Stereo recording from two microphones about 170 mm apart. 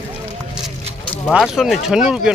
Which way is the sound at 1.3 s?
5° right (ahead or behind).